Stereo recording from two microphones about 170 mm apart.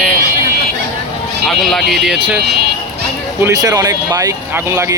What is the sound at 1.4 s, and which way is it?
Speech, centre (ahead or behind).